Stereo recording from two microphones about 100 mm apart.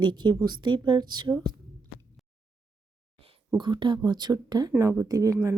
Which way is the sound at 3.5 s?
50° right (ahead or behind).